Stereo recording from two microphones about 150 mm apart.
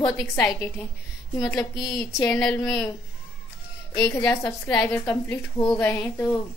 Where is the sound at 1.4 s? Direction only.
25° left (ahead or behind).